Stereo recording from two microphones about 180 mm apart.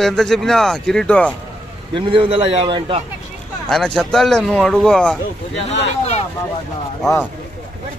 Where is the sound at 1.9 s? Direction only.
30° right (ahead or behind).